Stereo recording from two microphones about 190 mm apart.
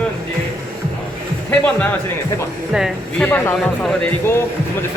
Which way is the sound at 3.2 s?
10° left (ahead or behind).